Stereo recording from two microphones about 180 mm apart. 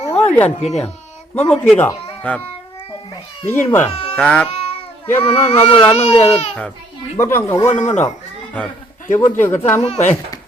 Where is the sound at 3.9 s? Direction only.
35° left (ahead or behind).